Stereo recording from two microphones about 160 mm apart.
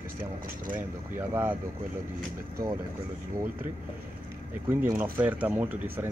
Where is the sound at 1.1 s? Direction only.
15° right (ahead or behind).